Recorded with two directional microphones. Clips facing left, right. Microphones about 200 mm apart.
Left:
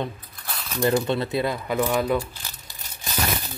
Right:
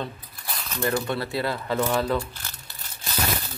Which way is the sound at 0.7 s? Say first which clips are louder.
Left 4 dB; 20° left (ahead or behind).